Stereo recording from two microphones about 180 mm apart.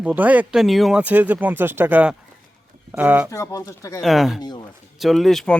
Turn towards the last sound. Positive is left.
turn(degrees=5)  # may be behind; listen again after turning